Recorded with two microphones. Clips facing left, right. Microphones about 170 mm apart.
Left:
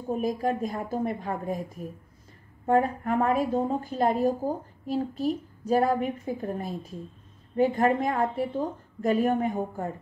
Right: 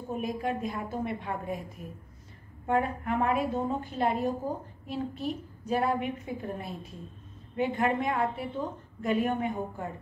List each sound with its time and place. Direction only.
0.1 s a woman's voice: 40° left (ahead or behind)
2.6 s a woman's voice: 40° left (ahead or behind)